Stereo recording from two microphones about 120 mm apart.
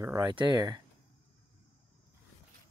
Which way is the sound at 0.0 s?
25° right (ahead or behind).